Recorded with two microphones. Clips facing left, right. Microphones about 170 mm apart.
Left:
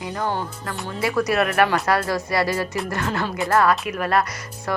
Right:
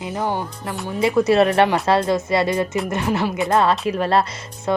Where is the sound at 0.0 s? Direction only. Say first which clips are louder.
Right 2 dB; 20° right (ahead or behind).